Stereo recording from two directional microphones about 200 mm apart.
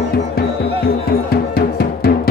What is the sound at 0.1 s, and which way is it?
Music, 50° left (ahead or behind).